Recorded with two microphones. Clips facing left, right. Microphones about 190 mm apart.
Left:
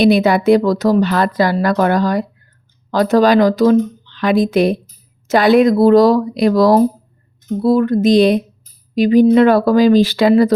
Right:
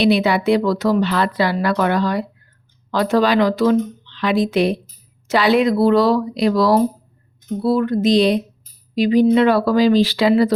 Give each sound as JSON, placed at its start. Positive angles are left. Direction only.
{"t": 0.0, "sound": "a woman's voice", "side_deg": 45}